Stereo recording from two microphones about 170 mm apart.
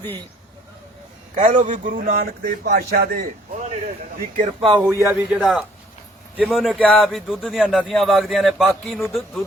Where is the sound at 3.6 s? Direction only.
40° right (ahead or behind).